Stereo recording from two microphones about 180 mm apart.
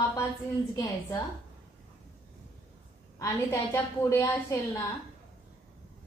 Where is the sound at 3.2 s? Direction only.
15° left (ahead or behind).